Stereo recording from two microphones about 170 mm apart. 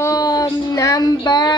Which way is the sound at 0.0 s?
20° left (ahead or behind).